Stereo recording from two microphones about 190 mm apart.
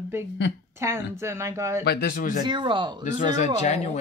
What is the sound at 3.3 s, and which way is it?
Speech, 40° left (ahead or behind).